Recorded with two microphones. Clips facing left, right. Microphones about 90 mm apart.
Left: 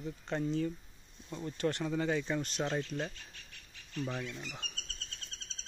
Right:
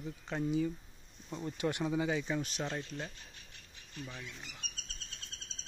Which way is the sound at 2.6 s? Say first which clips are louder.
Left 5 dB; 20° left (ahead or behind).